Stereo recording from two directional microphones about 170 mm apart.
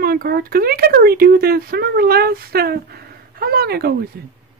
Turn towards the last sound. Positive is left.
turn(degrees=-60)  # may be behind; listen again after turning